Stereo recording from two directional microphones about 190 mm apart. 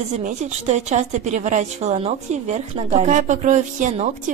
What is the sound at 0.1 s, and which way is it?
A woman's voice, 40° right (ahead or behind).